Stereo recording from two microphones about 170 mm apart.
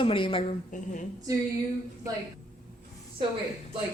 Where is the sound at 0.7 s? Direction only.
45° left (ahead or behind).